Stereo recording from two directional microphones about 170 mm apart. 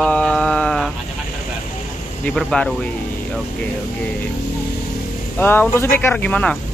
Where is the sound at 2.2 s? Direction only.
5° left (ahead or behind).